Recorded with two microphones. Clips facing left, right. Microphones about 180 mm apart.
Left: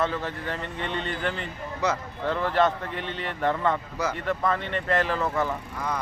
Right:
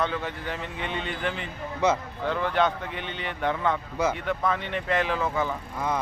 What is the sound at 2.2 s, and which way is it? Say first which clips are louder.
Speech: left 2 dB; centre (ahead or behind).